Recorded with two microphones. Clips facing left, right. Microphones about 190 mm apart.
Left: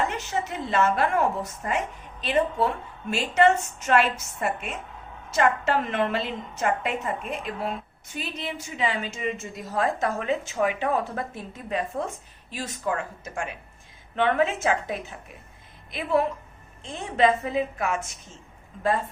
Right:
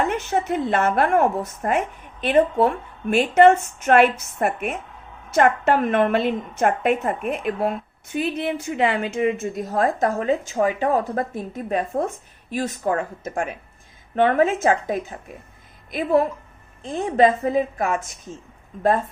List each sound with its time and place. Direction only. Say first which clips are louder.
0.0 s a woman's voice: right 5 dB; 55° right (ahead or behind)
14.2 s a woman's voice: right 5 dB; 45° right (ahead or behind)